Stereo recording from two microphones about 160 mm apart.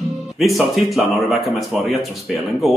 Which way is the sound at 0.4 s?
Centre (ahead or behind).